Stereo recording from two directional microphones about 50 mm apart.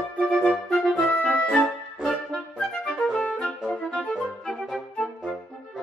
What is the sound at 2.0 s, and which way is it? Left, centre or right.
Music, centre.